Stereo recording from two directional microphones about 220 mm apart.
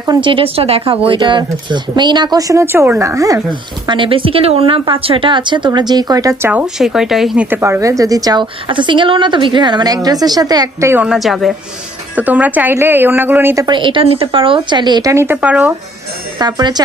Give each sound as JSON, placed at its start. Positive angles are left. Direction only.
{"t": 0.0, "sound": "speech", "side_deg": -20}
{"t": 16.3, "sound": "speech", "side_deg": -20}